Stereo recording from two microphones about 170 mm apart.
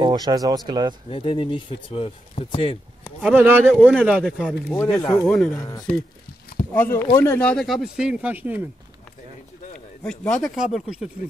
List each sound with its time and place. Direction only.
0.0 s speech: 25° right (ahead or behind)
1.1 s speech: 30° left (ahead or behind)
3.0 s speech: 5° right (ahead or behind)
3.7 s speech: 5° left (ahead or behind)
5.2 s speech: 5° left (ahead or behind)
5.6 s speech: 20° left (ahead or behind); by 8.6 s 10° right (ahead or behind)
10.0 s speech: 5° left (ahead or behind)